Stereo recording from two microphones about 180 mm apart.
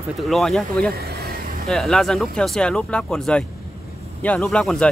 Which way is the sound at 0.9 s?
60° right (ahead or behind).